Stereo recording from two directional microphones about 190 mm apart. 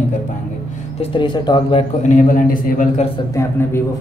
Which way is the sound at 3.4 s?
15° left (ahead or behind).